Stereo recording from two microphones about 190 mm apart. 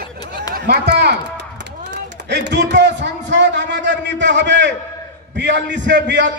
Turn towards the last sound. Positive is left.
turn(degrees=-70)  # may be behind; listen again after turning